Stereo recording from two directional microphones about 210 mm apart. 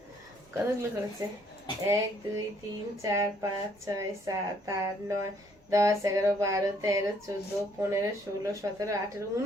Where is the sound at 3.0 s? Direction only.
15° right (ahead or behind).